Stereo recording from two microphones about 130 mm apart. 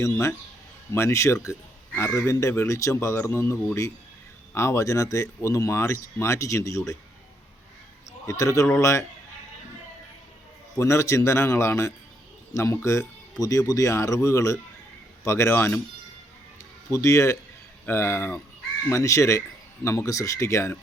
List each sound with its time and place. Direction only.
0.0 s speech: 20° left (ahead or behind)
8.3 s speech: 25° left (ahead or behind)
10.8 s speech: 20° left (ahead or behind)
16.9 s speech: 25° left (ahead or behind)